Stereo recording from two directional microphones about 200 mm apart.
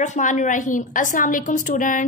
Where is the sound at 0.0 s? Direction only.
40° left (ahead or behind).